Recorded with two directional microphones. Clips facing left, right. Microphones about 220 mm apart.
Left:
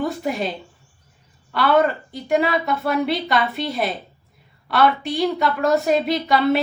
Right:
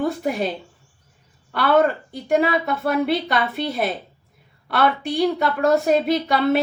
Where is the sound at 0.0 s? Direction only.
50° right (ahead or behind).